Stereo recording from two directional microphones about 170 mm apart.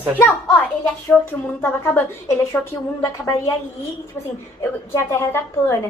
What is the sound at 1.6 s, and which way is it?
A woman's voice, 15° left (ahead or behind).